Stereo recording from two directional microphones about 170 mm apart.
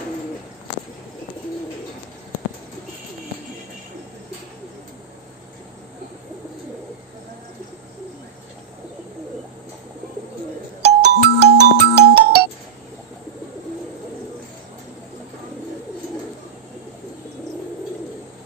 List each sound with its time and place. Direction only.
10.8 s music: 75° right (ahead or behind)